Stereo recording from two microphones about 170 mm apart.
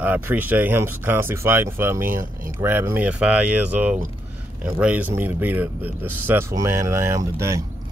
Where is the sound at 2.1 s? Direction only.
55° right (ahead or behind).